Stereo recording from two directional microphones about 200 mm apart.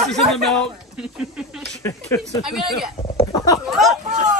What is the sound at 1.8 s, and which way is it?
Speech, 15° left (ahead or behind).